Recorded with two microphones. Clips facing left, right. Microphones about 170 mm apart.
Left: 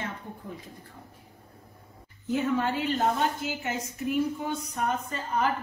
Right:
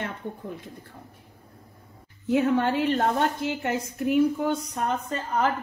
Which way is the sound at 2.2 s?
70° right (ahead or behind).